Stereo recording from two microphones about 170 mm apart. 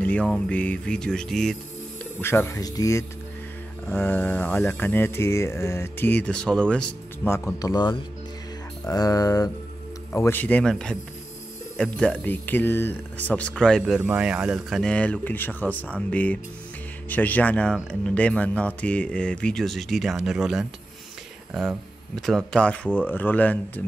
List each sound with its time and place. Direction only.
0.0 s speech: 10° left (ahead or behind)
2.2 s speech: 15° left (ahead or behind)
8.8 s a sound: 20° left (ahead or behind)
10.1 s speech: 15° left (ahead or behind)